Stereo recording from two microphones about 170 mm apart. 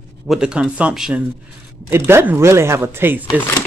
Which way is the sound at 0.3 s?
5° right (ahead or behind).